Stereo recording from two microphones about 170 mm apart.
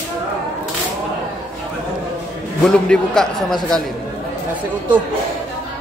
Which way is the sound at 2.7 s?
5° left (ahead or behind).